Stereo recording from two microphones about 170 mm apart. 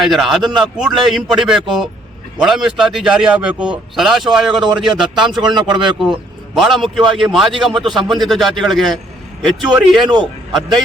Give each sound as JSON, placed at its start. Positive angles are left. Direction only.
{"t": 0.0, "sound": "a man's voice", "side_deg": 0}
{"t": 5.5, "sound": "speech", "side_deg": -25}
{"t": 6.0, "sound": "a man's voice", "side_deg": 0}